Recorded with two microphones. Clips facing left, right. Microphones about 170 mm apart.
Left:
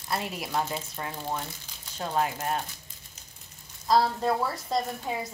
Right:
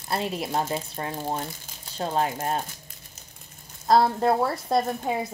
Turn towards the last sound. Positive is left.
turn(degrees=-60)  # may be behind; listen again after turning